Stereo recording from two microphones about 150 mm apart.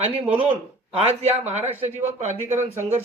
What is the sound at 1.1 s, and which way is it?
Speech, 45° right (ahead or behind).